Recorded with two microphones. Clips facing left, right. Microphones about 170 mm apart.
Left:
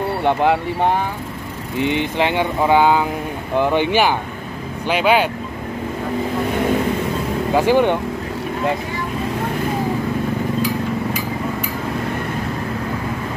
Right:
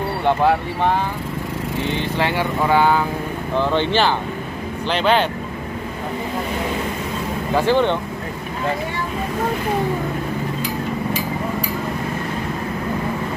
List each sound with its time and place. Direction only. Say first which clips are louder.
0.2 s speech: even; 15° left (ahead or behind)
7.5 s speech: left 2 dB; 15° left (ahead or behind)